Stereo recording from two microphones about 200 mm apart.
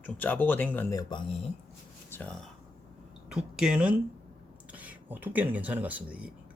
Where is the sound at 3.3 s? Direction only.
5° right (ahead or behind).